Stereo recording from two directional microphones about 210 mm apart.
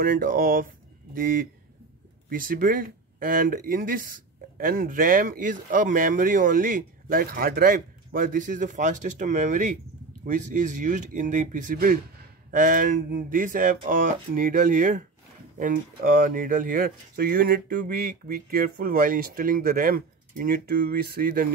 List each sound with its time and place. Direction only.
0.0 s speech: 40° right (ahead or behind)